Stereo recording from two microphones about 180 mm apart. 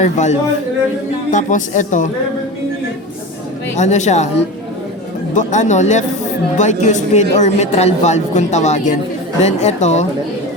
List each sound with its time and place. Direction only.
0.0 s a woman's voice: 40° left (ahead or behind)
3.8 s speech: 40° left (ahead or behind)
5.3 s speech: 45° left (ahead or behind)